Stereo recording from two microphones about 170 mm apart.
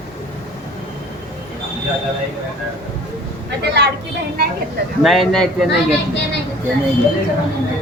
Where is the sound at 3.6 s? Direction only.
85° right.